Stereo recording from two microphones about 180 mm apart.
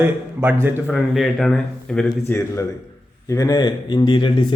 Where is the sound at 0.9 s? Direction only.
Centre (ahead or behind).